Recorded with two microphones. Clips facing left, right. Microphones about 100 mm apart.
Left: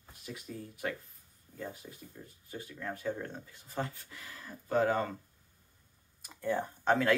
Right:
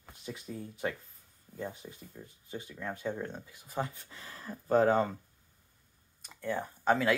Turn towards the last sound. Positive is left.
turn(degrees=-5)  # may be behind; listen again after turning